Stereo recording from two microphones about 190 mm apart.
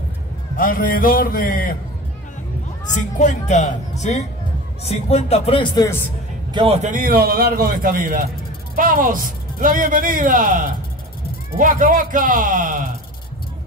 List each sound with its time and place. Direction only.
0.6 s a man's voice: 45° left (ahead or behind)
2.9 s speech: 40° left (ahead or behind)
6.5 s a man's voice: 30° right (ahead or behind)